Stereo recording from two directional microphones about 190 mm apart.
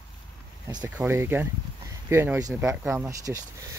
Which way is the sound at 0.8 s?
10° right (ahead or behind).